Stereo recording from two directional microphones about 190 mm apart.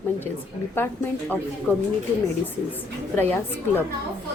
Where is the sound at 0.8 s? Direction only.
10° left (ahead or behind).